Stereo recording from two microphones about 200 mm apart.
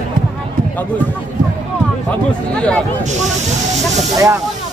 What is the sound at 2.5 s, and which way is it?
Speech, 5° left (ahead or behind).